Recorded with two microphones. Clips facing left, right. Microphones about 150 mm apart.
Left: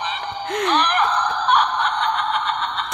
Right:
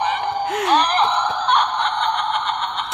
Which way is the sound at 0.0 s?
55° right (ahead or behind).